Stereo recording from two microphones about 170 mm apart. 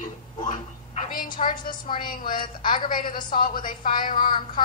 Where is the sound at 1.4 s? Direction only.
40° left (ahead or behind).